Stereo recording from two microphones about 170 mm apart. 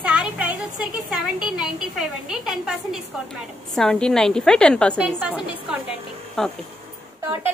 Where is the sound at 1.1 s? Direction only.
5° right (ahead or behind).